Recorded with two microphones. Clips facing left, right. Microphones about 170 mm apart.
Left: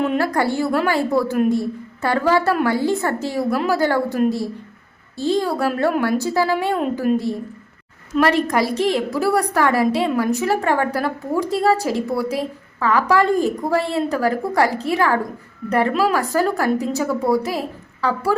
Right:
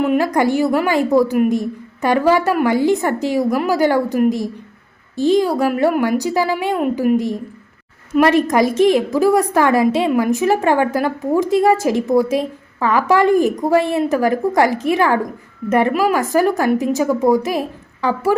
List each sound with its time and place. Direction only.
0.0 s a woman's voice: 10° right (ahead or behind)